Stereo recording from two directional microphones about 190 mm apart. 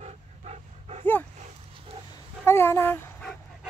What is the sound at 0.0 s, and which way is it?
Dog, 35° right (ahead or behind).